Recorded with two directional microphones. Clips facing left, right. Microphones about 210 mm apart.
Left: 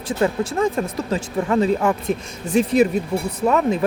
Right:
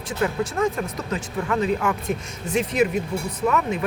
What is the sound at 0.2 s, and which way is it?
Speech, 30° left (ahead or behind).